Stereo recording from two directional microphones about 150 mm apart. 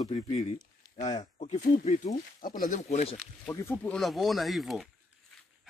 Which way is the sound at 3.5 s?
15° left (ahead or behind).